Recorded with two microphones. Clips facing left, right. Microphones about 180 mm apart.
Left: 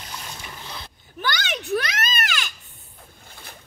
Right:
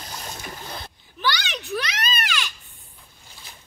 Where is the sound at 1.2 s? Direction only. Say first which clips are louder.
Right 1 dB; 50° left (ahead or behind).